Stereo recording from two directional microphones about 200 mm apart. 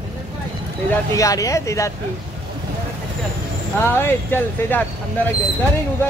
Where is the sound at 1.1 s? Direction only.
15° left (ahead or behind).